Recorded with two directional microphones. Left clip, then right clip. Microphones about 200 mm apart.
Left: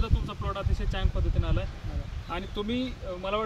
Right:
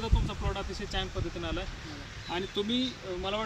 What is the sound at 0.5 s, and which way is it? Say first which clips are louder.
Speech: right 1 dB; 10° left (ahead or behind).